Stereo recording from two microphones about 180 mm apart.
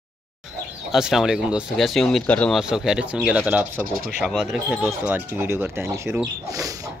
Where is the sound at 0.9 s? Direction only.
Centre (ahead or behind).